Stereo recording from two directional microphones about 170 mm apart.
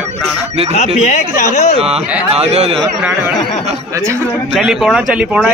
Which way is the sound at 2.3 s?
35° right (ahead or behind).